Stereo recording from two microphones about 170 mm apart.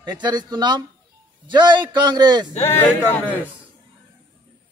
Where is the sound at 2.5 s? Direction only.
15° left (ahead or behind).